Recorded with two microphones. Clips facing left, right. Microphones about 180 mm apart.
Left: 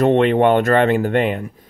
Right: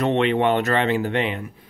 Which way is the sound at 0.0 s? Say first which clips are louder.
Left 6 dB; 50° left (ahead or behind).